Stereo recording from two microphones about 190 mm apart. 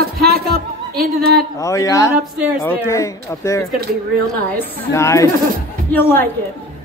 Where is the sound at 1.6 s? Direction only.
15° left (ahead or behind).